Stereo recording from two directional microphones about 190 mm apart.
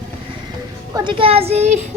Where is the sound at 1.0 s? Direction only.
30° right (ahead or behind).